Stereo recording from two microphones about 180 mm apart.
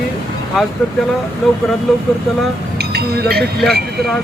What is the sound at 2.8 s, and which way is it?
Speech, 65° right (ahead or behind).